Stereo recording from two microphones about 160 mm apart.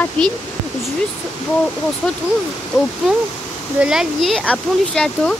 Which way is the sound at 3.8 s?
5° right (ahead or behind).